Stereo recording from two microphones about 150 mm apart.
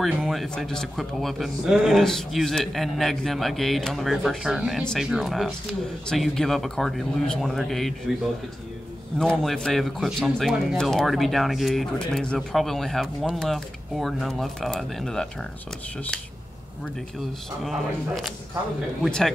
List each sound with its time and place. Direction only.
0.0 s a man's voice: centre (ahead or behind)
9.2 s a man's voice: 5° left (ahead or behind)
17.6 s a man's voice: centre (ahead or behind)